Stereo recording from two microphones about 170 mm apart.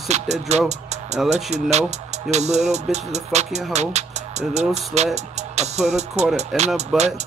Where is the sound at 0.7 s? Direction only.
40° right (ahead or behind).